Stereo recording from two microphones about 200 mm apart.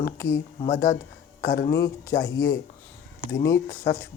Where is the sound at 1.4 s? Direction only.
55° left (ahead or behind).